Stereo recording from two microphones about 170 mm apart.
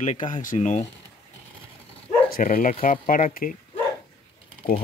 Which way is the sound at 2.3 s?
55° left (ahead or behind).